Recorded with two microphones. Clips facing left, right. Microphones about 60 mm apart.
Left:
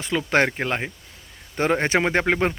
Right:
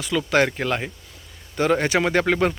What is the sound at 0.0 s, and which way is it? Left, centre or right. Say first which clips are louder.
Speech: right 1 dB; left.